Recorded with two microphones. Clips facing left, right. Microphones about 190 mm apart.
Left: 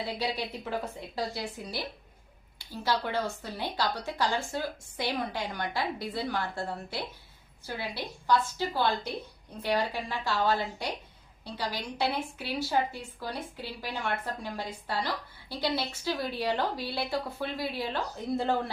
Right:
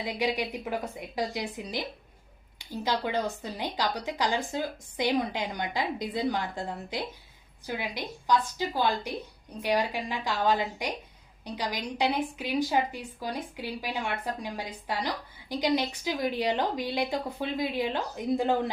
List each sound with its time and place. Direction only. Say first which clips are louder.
0.0 s a woman's voice: right 3 dB; 15° right (ahead or behind)